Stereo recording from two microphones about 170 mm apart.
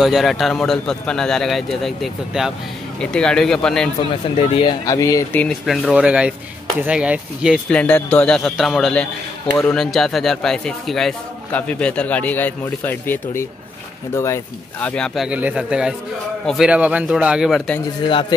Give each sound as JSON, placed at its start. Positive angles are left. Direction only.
{"t": 0.0, "sound": "speech", "side_deg": 0}
{"t": 4.0, "sound": "speech", "side_deg": 30}
{"t": 4.8, "sound": "speech", "side_deg": 20}
{"t": 5.3, "sound": "speech", "side_deg": 5}
{"t": 7.7, "sound": "speech", "side_deg": 10}
{"t": 14.9, "sound": "speech", "side_deg": 5}
{"t": 15.2, "sound": "speech", "side_deg": -5}